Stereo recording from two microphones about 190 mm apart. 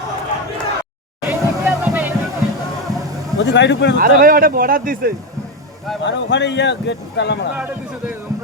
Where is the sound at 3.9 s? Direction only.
50° right (ahead or behind).